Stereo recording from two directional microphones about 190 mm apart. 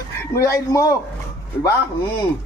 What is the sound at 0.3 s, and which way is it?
Speech, 15° left (ahead or behind).